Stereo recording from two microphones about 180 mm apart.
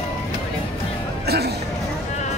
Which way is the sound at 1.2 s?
60° right (ahead or behind).